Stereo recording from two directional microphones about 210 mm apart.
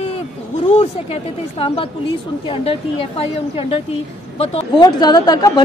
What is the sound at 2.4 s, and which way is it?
A man's voice, 25° left (ahead or behind).